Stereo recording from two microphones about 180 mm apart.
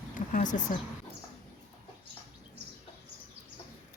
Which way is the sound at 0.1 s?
45° left (ahead or behind).